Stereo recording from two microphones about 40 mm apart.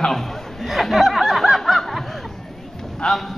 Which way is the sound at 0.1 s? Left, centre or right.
Centre.